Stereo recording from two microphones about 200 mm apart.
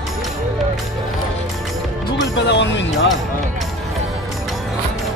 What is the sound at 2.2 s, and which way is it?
Speech, 65° left (ahead or behind).